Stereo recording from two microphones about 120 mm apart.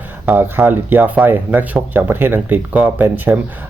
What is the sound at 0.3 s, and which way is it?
Speech, 15° right (ahead or behind).